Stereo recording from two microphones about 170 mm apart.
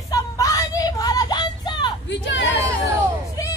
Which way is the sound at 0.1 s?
20° left (ahead or behind).